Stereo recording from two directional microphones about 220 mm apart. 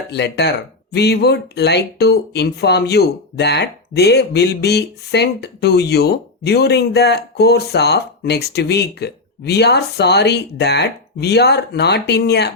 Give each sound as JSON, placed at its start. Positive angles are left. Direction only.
{"t": 0.1, "sound": "speech", "side_deg": 50}